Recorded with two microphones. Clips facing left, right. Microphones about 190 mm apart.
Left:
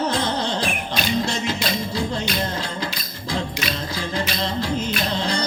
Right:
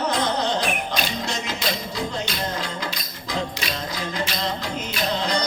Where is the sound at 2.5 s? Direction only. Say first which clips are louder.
Left 1 dB; 30° left (ahead or behind).